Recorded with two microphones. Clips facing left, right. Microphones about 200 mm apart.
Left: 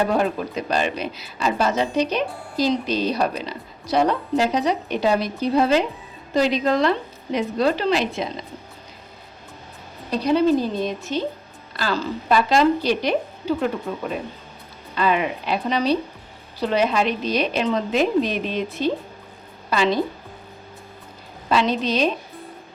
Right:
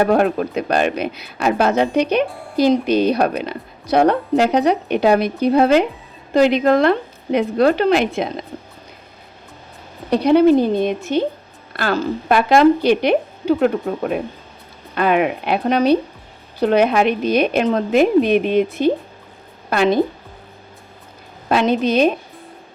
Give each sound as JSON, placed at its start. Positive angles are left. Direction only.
{"t": 0.0, "sound": "a woman's voice", "side_deg": -60}
{"t": 10.1, "sound": "a woman's voice", "side_deg": -60}
{"t": 21.5, "sound": "a woman's voice", "side_deg": -55}